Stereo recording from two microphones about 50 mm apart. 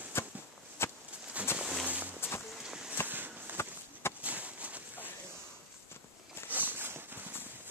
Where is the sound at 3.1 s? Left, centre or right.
Right.